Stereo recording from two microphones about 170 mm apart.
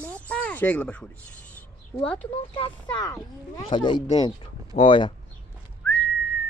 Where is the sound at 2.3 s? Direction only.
30° left (ahead or behind).